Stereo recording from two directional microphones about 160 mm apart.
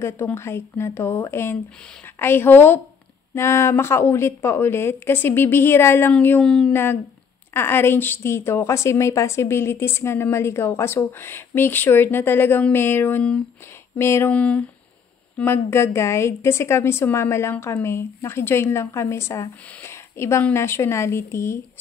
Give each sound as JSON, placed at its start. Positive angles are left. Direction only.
{"t": 0.0, "sound": "a woman's voice", "side_deg": 15}